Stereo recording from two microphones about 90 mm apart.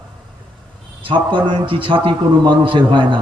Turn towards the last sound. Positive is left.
turn(degrees=-60)  # may be behind; listen again after turning